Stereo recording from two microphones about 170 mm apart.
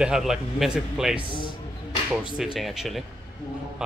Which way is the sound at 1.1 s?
30° left (ahead or behind).